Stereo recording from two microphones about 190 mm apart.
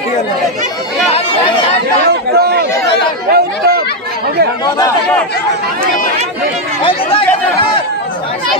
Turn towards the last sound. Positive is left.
turn(degrees=30)  # may be behind; listen again after turning